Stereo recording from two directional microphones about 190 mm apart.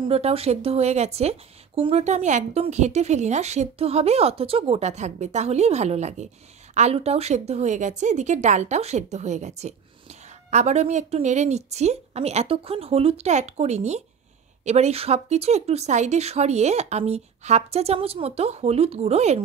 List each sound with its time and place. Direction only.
0.0 s speech: 30° right (ahead or behind)